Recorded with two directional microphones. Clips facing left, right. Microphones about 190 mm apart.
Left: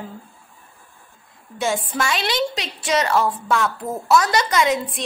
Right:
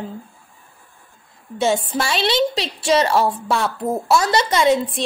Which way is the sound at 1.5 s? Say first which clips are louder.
Right 4 dB; 25° right (ahead or behind).